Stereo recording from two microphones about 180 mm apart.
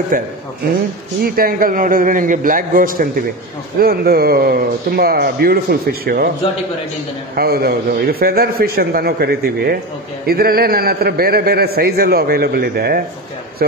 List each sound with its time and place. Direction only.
0.1 s a man's voice: 55° right (ahead or behind)
7.3 s a man's voice: 60° right (ahead or behind)